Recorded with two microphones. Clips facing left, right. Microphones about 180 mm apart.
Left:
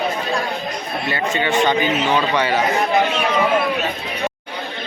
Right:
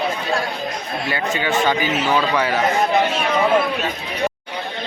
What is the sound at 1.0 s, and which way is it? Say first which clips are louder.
A man's voice: left 1 dB; centre (ahead or behind).